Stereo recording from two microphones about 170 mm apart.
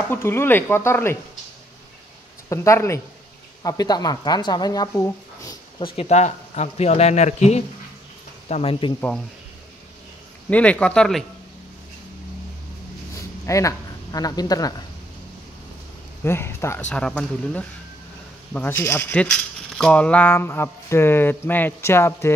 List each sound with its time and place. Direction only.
0.1 s speech: 15° left (ahead or behind)
2.5 s speech: 15° left (ahead or behind)
5.9 s speech: 40° left (ahead or behind)
10.5 s speech: 5° left (ahead or behind)
13.1 s speech: 20° left (ahead or behind)
16.3 s speech: 15° left (ahead or behind)